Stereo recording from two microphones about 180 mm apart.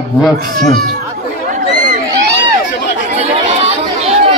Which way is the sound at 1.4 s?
45° right (ahead or behind).